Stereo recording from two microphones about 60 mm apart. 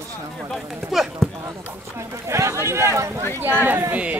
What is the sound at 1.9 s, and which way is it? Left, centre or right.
Speech, right.